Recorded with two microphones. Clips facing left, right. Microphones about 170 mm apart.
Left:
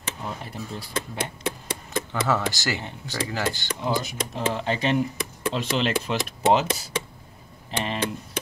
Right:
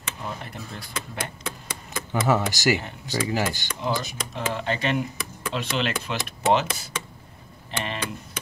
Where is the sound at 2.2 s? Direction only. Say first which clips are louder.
Right 5 dB; 15° right (ahead or behind).